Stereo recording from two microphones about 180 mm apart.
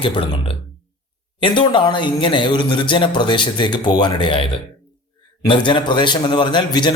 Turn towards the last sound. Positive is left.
turn(degrees=25)  # may be behind; listen again after turning